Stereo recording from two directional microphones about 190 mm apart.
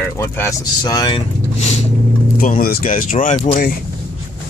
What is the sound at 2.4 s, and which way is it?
Speech, 50° left (ahead or behind).